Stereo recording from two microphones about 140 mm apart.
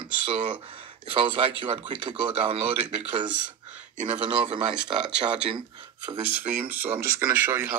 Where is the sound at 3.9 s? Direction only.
55° right (ahead or behind).